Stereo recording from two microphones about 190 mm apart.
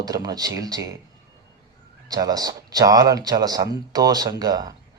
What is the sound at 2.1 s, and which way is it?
Speech, 20° right (ahead or behind).